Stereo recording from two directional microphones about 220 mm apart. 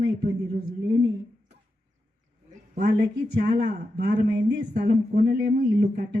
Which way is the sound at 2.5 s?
40° right (ahead or behind).